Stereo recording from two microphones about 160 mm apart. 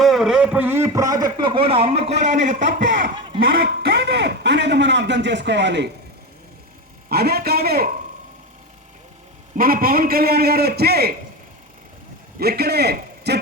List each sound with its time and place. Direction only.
0.0 s a man's voice: centre (ahead or behind); by 2.6 s 50° right (ahead or behind)
2.6 s a man's voice: 60° right (ahead or behind)
3.4 s a man's voice: 75° right (ahead or behind)
7.1 s a man's voice: 80° right
9.6 s a man's voice: 65° right (ahead or behind)
12.4 s a man's voice: 75° right (ahead or behind)